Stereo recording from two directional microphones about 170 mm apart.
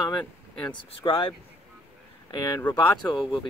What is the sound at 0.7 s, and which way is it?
Speech, 30° left (ahead or behind).